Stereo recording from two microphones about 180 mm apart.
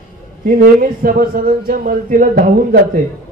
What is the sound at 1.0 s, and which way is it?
A man's voice, 55° right (ahead or behind).